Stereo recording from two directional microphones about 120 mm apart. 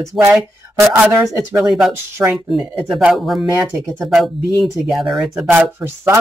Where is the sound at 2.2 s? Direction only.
15° right (ahead or behind).